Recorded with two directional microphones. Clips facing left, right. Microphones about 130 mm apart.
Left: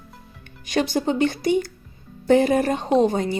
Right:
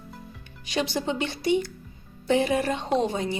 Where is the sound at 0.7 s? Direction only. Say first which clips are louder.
Left 5 dB; 50° left (ahead or behind).